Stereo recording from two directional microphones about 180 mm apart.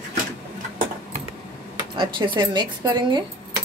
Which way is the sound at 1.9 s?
25° right (ahead or behind).